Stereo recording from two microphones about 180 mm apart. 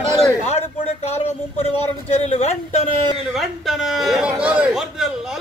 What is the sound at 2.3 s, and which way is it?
Speech, 35° left (ahead or behind).